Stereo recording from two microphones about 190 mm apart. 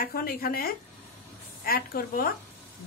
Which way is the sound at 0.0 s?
50° left (ahead or behind).